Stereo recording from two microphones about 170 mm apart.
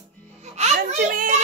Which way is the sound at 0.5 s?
45° right (ahead or behind).